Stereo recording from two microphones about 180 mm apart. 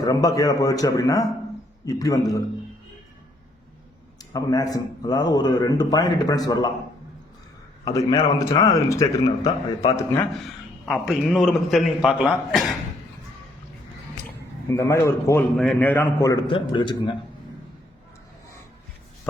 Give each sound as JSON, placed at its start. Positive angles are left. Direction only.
{"t": 0.0, "sound": "a man's voice", "side_deg": 20}
{"t": 4.3, "sound": "a man's voice", "side_deg": 20}
{"t": 7.9, "sound": "a man's voice", "side_deg": 20}
{"t": 10.8, "sound": "a man's voice", "side_deg": 0}
{"t": 14.3, "sound": "speech", "side_deg": 15}
{"t": 15.5, "sound": "a man's voice", "side_deg": 5}
{"t": 16.3, "sound": "a man's voice", "side_deg": 30}